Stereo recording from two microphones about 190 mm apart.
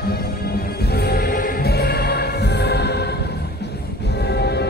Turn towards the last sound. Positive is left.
turn(degrees=60)  # may be behind; listen again after turning